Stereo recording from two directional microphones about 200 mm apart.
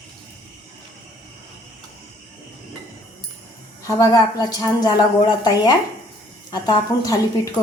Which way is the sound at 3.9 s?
15° left (ahead or behind).